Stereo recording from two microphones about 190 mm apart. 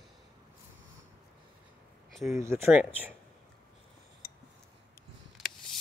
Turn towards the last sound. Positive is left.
turn(degrees=0)  # may be behind; listen again after turning